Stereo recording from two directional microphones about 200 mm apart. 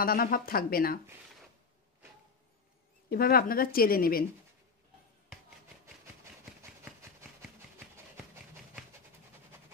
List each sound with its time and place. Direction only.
0.0 s speech: 50° left (ahead or behind)
3.1 s speech: 50° left (ahead or behind)